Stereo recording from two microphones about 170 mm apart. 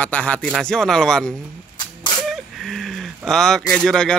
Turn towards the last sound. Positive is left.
turn(degrees=5)  # may be behind; listen again after turning